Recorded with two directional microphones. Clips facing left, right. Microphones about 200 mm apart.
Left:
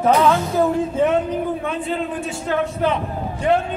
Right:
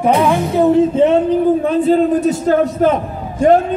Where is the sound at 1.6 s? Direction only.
35° right (ahead or behind).